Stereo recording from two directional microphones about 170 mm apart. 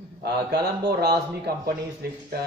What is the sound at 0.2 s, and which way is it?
Speech, 75° right (ahead or behind).